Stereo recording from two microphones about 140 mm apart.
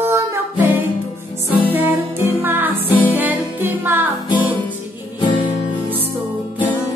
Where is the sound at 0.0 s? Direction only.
20° right (ahead or behind).